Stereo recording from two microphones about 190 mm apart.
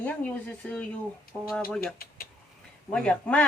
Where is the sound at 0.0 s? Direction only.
10° left (ahead or behind).